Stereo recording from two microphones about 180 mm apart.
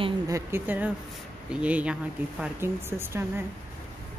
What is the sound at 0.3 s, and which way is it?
Speech, 10° right (ahead or behind).